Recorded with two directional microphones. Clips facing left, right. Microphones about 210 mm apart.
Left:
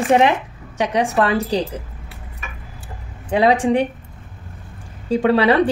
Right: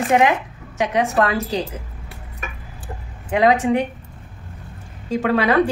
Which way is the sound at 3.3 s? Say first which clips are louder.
Left 1 dB; 30° left (ahead or behind).